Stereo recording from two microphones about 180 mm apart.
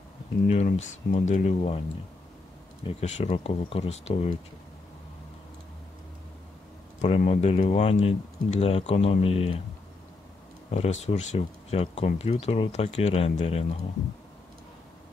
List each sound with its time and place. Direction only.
0.5 s speech: 40° left (ahead or behind)
2.8 s speech: 35° left (ahead or behind)
7.0 s speech: 40° left (ahead or behind)
10.7 s speech: 35° left (ahead or behind)